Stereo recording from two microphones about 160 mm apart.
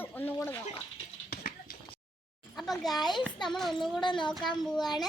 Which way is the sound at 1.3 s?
65° left (ahead or behind).